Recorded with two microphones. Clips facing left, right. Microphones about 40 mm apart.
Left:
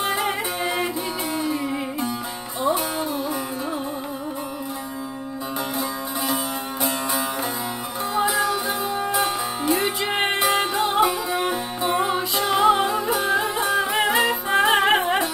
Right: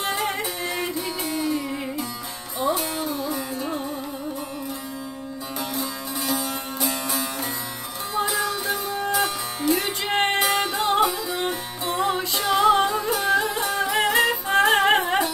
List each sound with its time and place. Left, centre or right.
0.0 s music: centre
2.6 s music: left
5.8 s music: left
8.1 s music: centre
10.4 s music: centre